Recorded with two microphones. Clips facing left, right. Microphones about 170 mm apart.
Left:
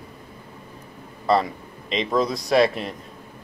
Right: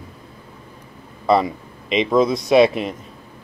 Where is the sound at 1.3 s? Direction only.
15° right (ahead or behind).